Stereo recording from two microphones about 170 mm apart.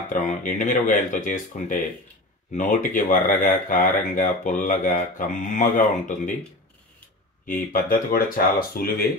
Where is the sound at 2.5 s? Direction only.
50° left (ahead or behind).